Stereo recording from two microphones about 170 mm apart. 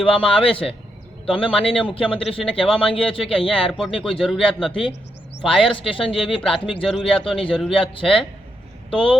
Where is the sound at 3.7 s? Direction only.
Centre (ahead or behind).